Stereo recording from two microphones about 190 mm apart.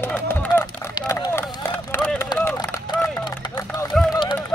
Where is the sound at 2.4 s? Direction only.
10° left (ahead or behind).